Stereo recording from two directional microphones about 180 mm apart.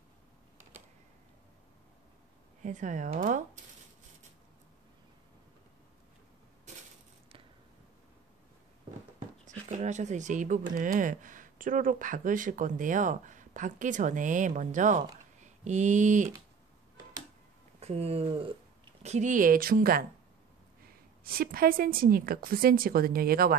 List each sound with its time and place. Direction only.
2.6 s speech: 45° right (ahead or behind)
9.7 s speech: 40° right (ahead or behind)
15.4 s a sound: 40° right (ahead or behind)
17.7 s speech: 35° right (ahead or behind)
19.0 s speech: 40° right (ahead or behind)
21.2 s a woman's voice: 55° right (ahead or behind)